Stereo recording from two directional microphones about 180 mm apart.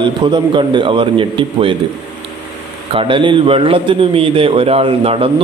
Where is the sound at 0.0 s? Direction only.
25° right (ahead or behind).